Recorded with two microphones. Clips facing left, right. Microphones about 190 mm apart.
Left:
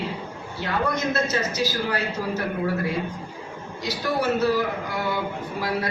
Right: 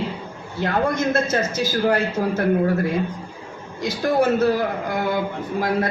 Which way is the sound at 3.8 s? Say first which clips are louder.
Right 6 dB; 50° right (ahead or behind).